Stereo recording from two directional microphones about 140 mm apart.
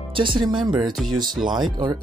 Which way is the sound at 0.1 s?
35° right (ahead or behind).